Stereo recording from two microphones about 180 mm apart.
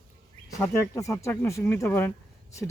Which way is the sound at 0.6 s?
15° left (ahead or behind).